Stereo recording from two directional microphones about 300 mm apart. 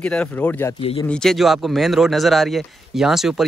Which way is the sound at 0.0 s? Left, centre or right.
Centre.